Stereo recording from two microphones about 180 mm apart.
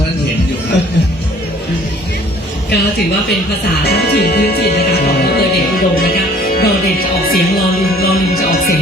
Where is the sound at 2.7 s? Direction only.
65° left (ahead or behind).